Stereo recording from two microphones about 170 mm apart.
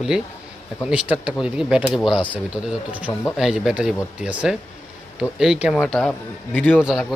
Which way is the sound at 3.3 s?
5° right (ahead or behind).